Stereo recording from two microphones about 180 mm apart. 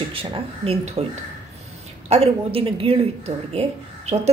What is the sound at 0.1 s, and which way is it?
Speech, 30° right (ahead or behind).